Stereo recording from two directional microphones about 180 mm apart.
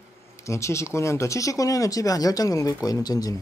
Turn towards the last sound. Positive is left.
turn(degrees=20)  # may be behind; listen again after turning